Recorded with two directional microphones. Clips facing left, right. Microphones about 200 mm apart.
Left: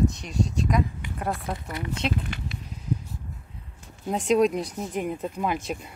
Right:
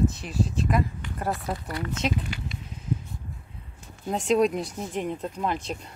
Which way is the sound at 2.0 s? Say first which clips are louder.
Left 1 dB; 5° right (ahead or behind).